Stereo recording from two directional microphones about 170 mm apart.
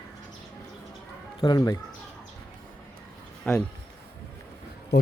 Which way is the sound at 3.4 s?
10° left (ahead or behind).